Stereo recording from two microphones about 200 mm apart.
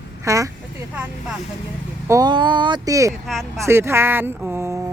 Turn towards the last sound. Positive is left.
turn(degrees=-10)  # may be behind; listen again after turning